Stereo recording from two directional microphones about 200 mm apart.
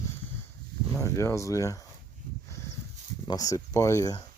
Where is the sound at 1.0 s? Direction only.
15° left (ahead or behind).